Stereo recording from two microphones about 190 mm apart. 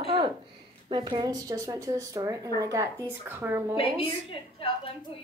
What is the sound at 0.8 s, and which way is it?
A child's voice, 25° right (ahead or behind).